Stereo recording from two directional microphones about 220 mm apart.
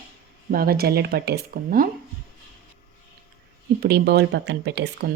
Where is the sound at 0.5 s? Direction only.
40° right (ahead or behind).